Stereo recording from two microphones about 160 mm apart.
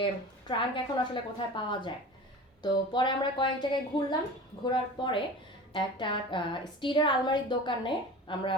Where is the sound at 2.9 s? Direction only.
30° left (ahead or behind).